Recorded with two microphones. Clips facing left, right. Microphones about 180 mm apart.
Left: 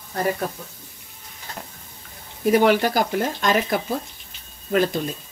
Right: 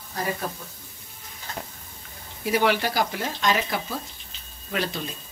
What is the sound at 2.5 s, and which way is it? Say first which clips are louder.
A woman's voice: left 6 dB; 45° left (ahead or behind).